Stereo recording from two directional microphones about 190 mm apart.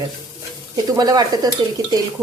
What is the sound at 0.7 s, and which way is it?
Stir, 20° right (ahead or behind).